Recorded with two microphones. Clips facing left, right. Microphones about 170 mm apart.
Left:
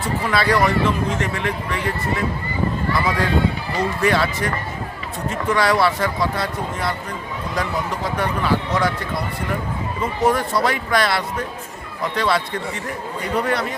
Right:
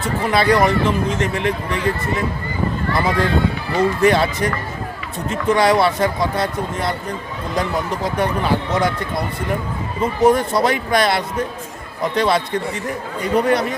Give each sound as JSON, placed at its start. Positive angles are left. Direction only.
{"t": 0.3, "sound": "speech", "side_deg": -20}
{"t": 3.8, "sound": "speech", "side_deg": -20}
{"t": 10.0, "sound": "speech", "side_deg": -20}